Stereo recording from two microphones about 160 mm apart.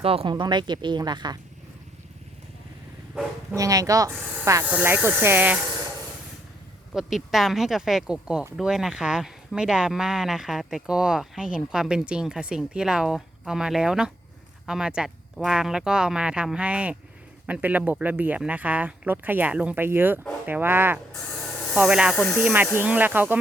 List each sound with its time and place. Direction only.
0.0 s speech: 35° right (ahead or behind)
3.5 s speech: 20° right (ahead or behind)
4.6 s speech: 10° right (ahead or behind)
6.9 s speech: centre (ahead or behind)